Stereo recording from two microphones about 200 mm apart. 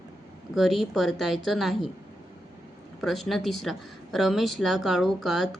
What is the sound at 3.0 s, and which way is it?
A woman's voice, centre (ahead or behind).